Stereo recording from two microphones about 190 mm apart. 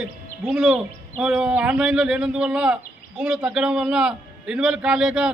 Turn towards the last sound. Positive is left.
turn(degrees=-5)  # may be behind; listen again after turning